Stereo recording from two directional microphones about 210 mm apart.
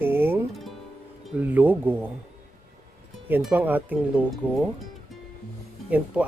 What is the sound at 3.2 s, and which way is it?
Speech, 10° right (ahead or behind).